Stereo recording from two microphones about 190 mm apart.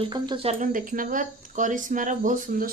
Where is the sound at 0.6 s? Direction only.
45° right (ahead or behind).